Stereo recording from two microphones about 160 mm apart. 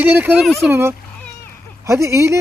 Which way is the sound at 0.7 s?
15° right (ahead or behind).